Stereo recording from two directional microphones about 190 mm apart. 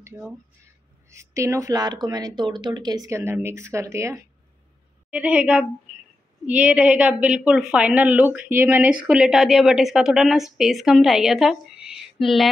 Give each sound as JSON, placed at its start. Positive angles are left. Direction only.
{"t": 0.1, "sound": "a woman's voice", "side_deg": -10}